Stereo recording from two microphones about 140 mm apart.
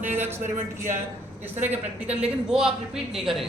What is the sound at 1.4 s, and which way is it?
A man's voice, 15° right (ahead or behind).